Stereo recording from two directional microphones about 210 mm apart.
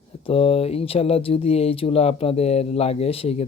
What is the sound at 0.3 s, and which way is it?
Speech, 25° left (ahead or behind).